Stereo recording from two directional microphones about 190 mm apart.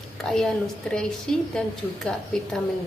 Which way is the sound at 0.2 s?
Centre (ahead or behind).